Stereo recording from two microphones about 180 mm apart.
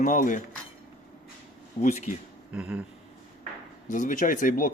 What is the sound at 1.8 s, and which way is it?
Speech, 40° left (ahead or behind).